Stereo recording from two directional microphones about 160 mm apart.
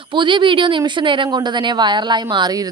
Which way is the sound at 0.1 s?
30° right (ahead or behind).